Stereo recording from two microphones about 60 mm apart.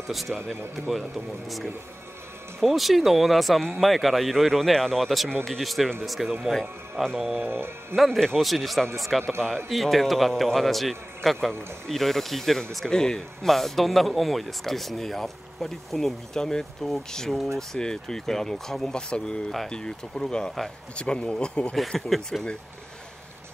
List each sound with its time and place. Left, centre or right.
0.1 s a man's voice: centre
7.3 s speech: right
7.9 s a man's voice: centre
21.7 s a man's voice: centre